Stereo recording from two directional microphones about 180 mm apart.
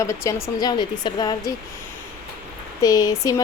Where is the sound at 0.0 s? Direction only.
15° left (ahead or behind).